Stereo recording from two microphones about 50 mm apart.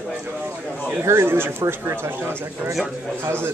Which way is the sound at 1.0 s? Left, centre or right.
Right.